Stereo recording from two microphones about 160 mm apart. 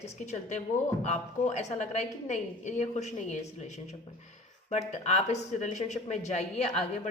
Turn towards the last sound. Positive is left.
turn(degrees=45)  # may be behind; listen again after turning